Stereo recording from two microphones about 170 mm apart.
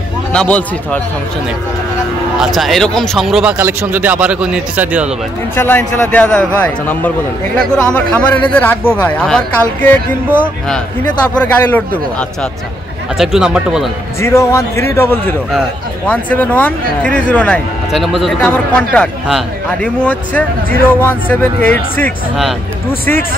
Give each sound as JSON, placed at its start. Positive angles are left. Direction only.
{"t": 0.3, "sound": "speech", "side_deg": 5}
{"t": 2.3, "sound": "speech", "side_deg": 0}
{"t": 5.6, "sound": "speech", "side_deg": 10}
{"t": 11.2, "sound": "speech", "side_deg": 10}
{"t": 13.2, "sound": "speech", "side_deg": -5}
{"t": 14.2, "sound": "speech", "side_deg": 15}